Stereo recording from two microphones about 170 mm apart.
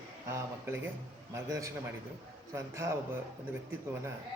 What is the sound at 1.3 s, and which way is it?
A man's voice, 20° right (ahead or behind).